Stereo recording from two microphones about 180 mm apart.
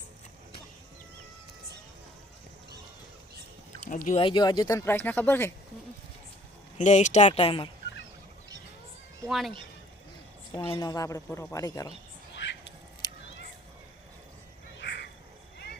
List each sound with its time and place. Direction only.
3.8 s speech: 45° left (ahead or behind)
4.2 s speech: 25° left (ahead or behind)
6.7 s speech: 40° left (ahead or behind)
9.2 s speech: centre (ahead or behind)
10.5 s a woman's voice: 25° left (ahead or behind)
12.3 s a sound: 90° left
13.0 s a sound: 25° left (ahead or behind)
14.8 s duck: 75° left (ahead or behind)
15.5 s vehicle: 65° left (ahead or behind)